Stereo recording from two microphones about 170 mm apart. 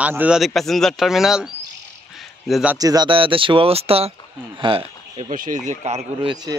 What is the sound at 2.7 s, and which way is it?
Speech, 20° right (ahead or behind).